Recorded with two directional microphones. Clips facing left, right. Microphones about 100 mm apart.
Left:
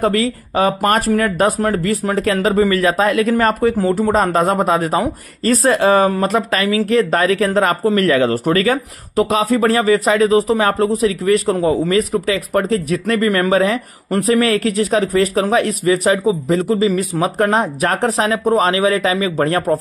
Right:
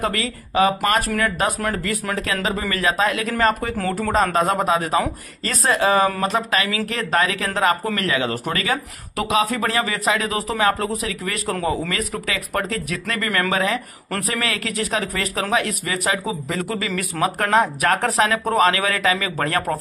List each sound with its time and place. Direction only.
0.0 s speech: 40° left (ahead or behind)
3.7 s speech: 25° left (ahead or behind)
4.1 s speech: 40° left (ahead or behind)